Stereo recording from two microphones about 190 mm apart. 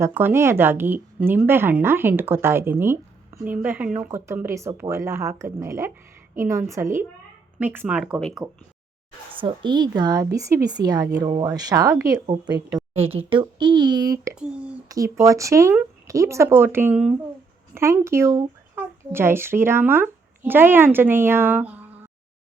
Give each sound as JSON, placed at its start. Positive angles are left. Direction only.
{"t": 0.0, "sound": "speech", "side_deg": -10}
{"t": 9.4, "sound": "speech", "side_deg": -25}
{"t": 12.2, "sound": "speech", "side_deg": -30}
{"t": 14.3, "sound": "speech", "side_deg": -5}
{"t": 14.8, "sound": "speech", "side_deg": -15}